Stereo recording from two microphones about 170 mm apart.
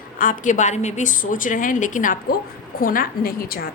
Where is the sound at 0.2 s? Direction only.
50° left (ahead or behind).